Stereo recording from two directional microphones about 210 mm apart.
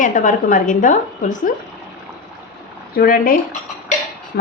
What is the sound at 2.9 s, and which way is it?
Speech, 45° left (ahead or behind).